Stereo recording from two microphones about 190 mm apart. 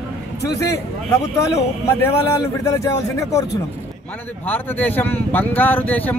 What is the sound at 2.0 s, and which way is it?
Speech, 15° left (ahead or behind).